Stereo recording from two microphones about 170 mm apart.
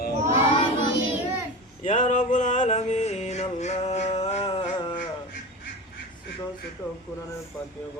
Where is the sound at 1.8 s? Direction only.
45° left (ahead or behind).